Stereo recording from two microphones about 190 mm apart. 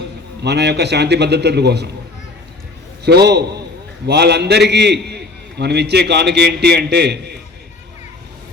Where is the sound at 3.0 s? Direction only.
60° right (ahead or behind).